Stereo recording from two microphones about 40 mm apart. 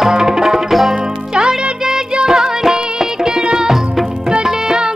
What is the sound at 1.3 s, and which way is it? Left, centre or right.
Music, centre.